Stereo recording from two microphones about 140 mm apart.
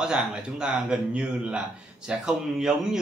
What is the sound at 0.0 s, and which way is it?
A man's voice, 5° right (ahead or behind).